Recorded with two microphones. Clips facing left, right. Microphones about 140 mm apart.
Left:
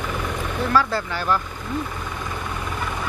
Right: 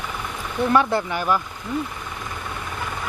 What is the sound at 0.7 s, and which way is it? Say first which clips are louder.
Speech: right 2 dB; 20° right (ahead or behind).